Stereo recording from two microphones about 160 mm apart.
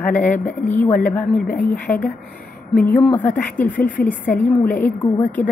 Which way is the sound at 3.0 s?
10° left (ahead or behind).